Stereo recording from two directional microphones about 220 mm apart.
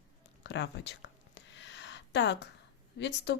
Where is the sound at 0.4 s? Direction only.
50° left (ahead or behind).